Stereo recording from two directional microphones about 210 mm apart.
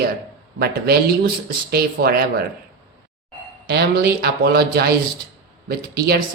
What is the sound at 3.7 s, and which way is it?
Speech, 50° right (ahead or behind).